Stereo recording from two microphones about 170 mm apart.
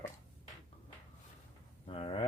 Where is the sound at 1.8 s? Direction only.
30° left (ahead or behind).